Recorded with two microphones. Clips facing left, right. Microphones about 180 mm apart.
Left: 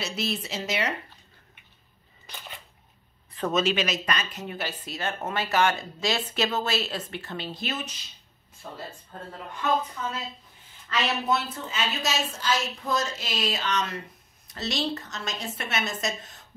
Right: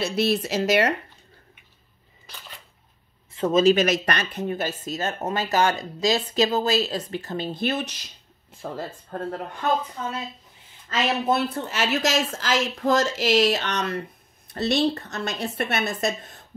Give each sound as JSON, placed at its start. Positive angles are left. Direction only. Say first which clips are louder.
{"t": 0.0, "sound": "a woman's voice", "louder": "right 8 dB", "side_deg": -60}
{"t": 0.7, "sound": "speech", "louder": "right 8 dB", "side_deg": -50}
{"t": 3.3, "sound": "speech", "louder": "right 7 dB", "side_deg": -25}
{"t": 3.7, "sound": "speech", "louder": "right 7 dB", "side_deg": -45}
{"t": 4.1, "sound": "a woman's voice", "louder": "right 4 dB", "side_deg": -65}
{"t": 4.5, "sound": "speech", "louder": "right 7 dB", "side_deg": -45}
{"t": 7.8, "sound": "speech", "louder": "right 5 dB", "side_deg": -90}
{"t": 10.9, "sound": "a woman's voice", "louder": "right 3 dB", "side_deg": -55}